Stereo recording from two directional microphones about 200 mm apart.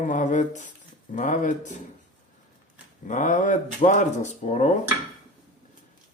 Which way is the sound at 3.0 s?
40° left (ahead or behind).